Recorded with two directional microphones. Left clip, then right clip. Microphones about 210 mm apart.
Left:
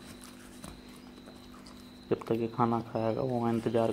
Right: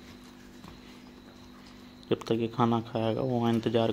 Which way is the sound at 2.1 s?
40° right (ahead or behind).